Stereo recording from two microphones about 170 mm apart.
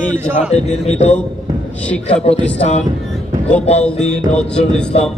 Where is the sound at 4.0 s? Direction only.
5° left (ahead or behind).